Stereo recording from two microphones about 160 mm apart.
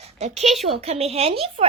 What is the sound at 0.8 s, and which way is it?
Speech, 40° right (ahead or behind).